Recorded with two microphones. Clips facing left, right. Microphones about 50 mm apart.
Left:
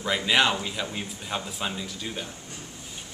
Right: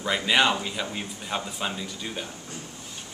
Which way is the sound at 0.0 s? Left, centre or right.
Centre.